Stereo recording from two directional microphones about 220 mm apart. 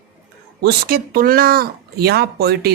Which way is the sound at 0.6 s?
45° right (ahead or behind).